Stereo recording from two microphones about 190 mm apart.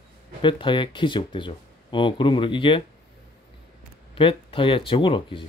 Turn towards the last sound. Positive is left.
turn(degrees=25)  # may be behind; listen again after turning